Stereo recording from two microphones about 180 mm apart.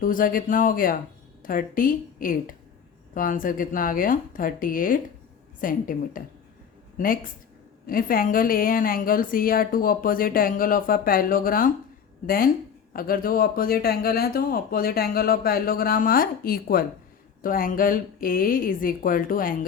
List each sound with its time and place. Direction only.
0.0 s a woman's voice: 50° left (ahead or behind)
7.9 s a woman's voice: 50° left (ahead or behind)